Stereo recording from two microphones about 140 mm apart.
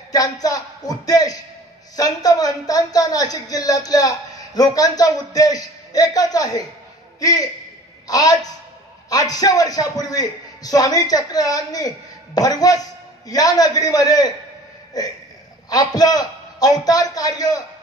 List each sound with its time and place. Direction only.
0.1 s a woman's voice: 25° left (ahead or behind)